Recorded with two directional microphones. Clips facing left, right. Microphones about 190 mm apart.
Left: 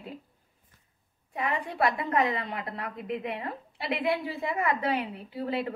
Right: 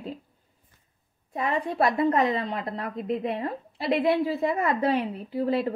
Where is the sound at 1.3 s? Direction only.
40° right (ahead or behind).